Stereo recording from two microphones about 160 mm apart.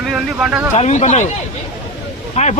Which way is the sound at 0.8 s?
45° left (ahead or behind).